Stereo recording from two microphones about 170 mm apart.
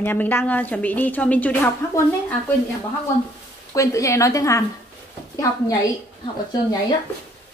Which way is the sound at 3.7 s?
20° left (ahead or behind).